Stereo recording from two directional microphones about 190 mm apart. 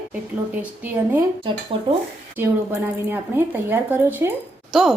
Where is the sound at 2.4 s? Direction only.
10° right (ahead or behind).